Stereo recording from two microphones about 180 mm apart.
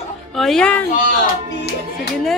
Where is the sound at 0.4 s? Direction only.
5° left (ahead or behind).